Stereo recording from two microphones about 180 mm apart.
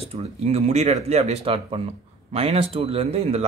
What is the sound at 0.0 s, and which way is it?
Speech, 35° right (ahead or behind).